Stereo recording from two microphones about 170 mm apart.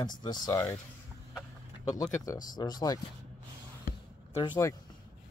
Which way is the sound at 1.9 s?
25° left (ahead or behind).